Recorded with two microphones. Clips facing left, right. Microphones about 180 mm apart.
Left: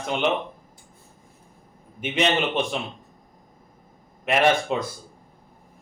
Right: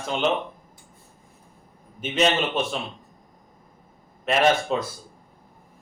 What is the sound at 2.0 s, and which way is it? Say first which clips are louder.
Speech: right 1 dB; 15° left (ahead or behind).